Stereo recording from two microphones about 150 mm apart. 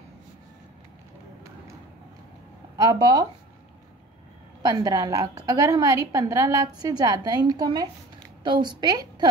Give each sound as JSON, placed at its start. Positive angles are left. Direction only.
{"t": 2.8, "sound": "a woman's voice", "side_deg": -30}
{"t": 4.6, "sound": "a woman's voice", "side_deg": -25}